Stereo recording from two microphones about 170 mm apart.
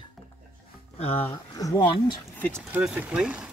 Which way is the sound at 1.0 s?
35° left (ahead or behind).